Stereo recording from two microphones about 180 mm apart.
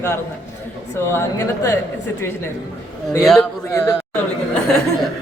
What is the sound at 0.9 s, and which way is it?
Speech, 15° left (ahead or behind).